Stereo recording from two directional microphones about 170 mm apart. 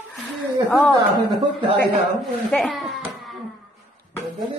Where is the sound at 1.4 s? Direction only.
30° right (ahead or behind).